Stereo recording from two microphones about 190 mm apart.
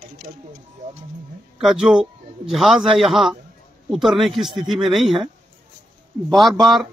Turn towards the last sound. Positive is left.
turn(degrees=0)  # may be behind; listen again after turning